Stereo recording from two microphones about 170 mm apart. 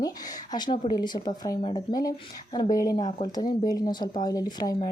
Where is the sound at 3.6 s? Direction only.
25° left (ahead or behind).